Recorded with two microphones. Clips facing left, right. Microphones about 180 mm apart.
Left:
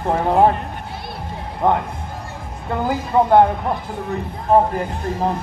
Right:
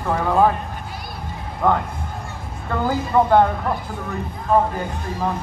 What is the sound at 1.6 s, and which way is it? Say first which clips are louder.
Speech: left 1 dB; 20° left (ahead or behind).